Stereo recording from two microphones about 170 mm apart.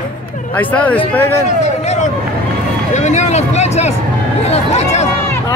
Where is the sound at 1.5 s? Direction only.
45° left (ahead or behind).